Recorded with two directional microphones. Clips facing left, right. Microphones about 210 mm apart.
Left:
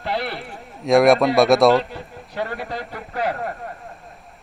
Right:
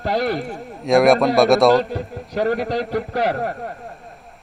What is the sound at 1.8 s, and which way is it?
Speech, 40° right (ahead or behind).